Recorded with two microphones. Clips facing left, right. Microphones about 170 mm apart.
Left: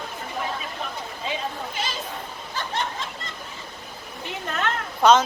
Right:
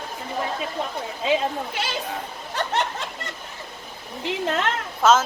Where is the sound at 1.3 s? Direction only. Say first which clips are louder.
Right 8 dB; 75° right (ahead or behind).